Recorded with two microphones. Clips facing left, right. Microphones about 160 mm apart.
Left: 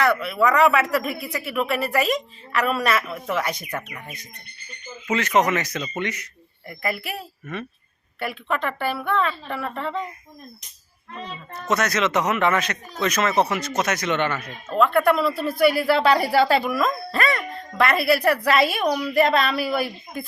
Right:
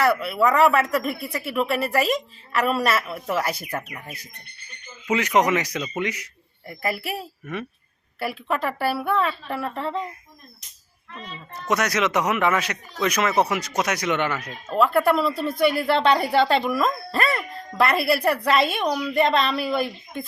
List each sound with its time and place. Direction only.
0.0 s a man's voice: 5° right (ahead or behind)
7.5 s a man's voice: 15° right (ahead or behind)
11.7 s a man's voice: 10° right (ahead or behind)
14.9 s speech: centre (ahead or behind)